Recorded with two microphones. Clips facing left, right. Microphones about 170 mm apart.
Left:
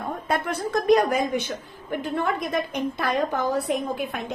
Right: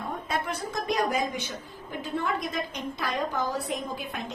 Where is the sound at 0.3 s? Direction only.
55° left (ahead or behind).